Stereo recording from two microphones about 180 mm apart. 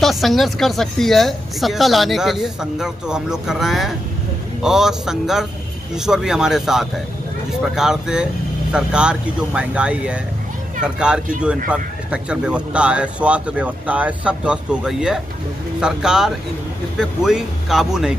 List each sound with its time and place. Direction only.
0.0 s speech: centre (ahead or behind)